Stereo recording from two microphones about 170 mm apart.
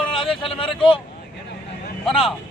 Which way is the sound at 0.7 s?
Centre (ahead or behind).